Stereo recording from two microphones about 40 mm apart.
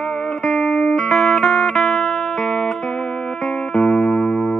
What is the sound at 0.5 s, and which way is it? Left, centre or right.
Music, centre.